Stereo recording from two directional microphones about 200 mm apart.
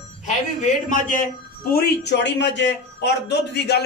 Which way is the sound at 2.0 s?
60° left (ahead or behind).